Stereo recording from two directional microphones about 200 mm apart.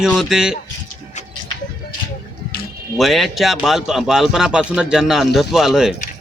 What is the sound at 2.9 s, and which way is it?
Speech, centre (ahead or behind).